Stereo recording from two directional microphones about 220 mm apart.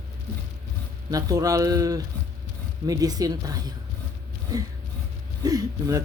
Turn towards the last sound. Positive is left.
turn(degrees=-15)  # may be behind; listen again after turning